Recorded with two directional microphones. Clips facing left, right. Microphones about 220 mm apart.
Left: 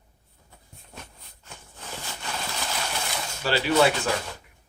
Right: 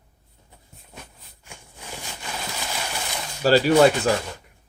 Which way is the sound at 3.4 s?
40° right (ahead or behind).